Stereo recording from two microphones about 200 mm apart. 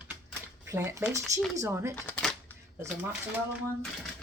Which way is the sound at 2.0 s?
Centre (ahead or behind).